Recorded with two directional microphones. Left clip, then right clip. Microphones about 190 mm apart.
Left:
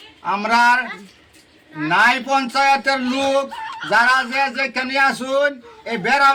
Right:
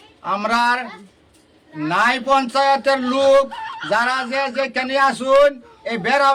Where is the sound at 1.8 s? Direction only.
25° right (ahead or behind).